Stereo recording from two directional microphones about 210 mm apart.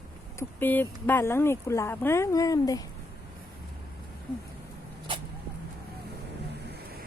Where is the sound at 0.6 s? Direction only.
10° left (ahead or behind).